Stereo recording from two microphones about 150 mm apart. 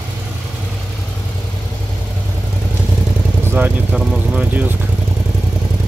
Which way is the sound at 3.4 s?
15° right (ahead or behind).